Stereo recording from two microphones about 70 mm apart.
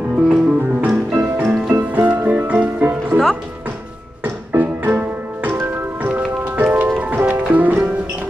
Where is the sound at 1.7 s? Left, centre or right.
Right.